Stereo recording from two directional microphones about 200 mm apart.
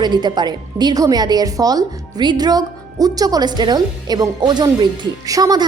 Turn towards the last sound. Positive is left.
turn(degrees=-20)  # may be behind; listen again after turning